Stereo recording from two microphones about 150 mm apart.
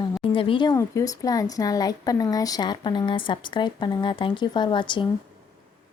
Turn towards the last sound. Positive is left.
turn(degrees=30)  # may be behind; listen again after turning